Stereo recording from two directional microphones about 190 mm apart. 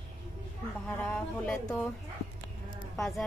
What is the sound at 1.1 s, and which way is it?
Mantra, 10° left (ahead or behind).